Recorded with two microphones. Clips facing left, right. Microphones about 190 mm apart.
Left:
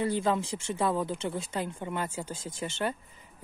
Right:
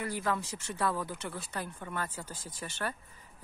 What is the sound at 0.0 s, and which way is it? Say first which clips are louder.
Speech: left 6 dB; 25° left (ahead or behind).